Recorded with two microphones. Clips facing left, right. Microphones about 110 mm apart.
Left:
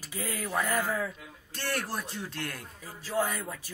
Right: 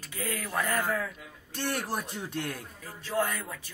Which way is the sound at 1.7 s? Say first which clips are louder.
Right 1 dB; 15° right (ahead or behind).